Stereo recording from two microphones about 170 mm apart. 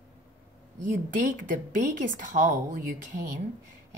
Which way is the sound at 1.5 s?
50° right (ahead or behind).